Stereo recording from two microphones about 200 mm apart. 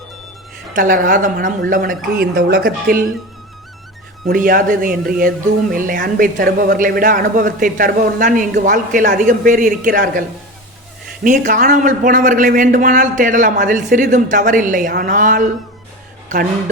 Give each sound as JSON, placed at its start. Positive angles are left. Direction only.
{"t": 0.7, "sound": "a man's voice", "side_deg": -40}
{"t": 4.3, "sound": "a man's voice", "side_deg": -45}